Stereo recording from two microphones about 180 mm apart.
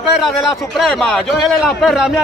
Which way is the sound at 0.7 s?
Centre (ahead or behind).